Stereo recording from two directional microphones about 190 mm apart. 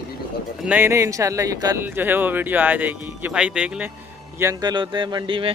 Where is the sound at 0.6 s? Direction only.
10° right (ahead or behind).